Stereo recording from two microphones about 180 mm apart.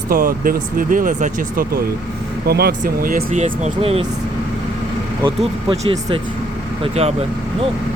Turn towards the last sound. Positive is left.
turn(degrees=-35)  # may be behind; listen again after turning